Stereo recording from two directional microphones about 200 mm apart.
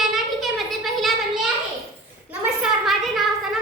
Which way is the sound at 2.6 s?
Centre (ahead or behind).